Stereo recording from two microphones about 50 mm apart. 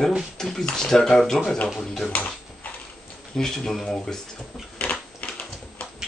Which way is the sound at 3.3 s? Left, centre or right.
Centre.